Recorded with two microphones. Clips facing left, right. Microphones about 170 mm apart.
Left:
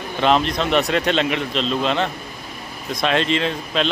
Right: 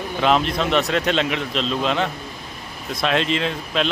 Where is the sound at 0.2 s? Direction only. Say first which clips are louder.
Left 1 dB; centre (ahead or behind).